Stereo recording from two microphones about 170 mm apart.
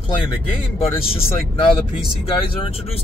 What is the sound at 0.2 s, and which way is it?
Speech, 35° left (ahead or behind).